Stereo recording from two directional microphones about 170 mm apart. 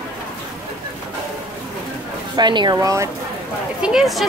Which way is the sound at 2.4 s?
25° right (ahead or behind).